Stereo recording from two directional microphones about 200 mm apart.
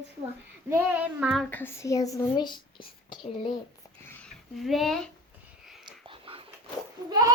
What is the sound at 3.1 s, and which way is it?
Whispering, 25° left (ahead or behind).